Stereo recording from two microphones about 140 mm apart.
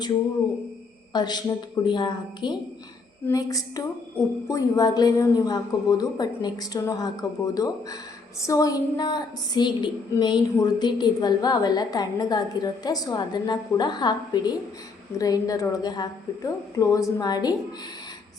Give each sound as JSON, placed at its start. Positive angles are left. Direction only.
{"t": 1.1, "sound": "a woman's voice", "side_deg": 30}